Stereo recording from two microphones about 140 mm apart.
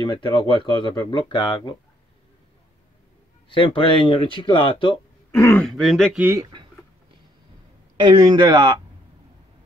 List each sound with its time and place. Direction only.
0.0 s speech: 35° left (ahead or behind)
3.4 s speech: 40° left (ahead or behind)
5.3 s speech: 25° left (ahead or behind)
5.6 s speech: centre (ahead or behind)
6.1 s speech: 15° right (ahead or behind)
8.0 s a man's voice: 30° right (ahead or behind)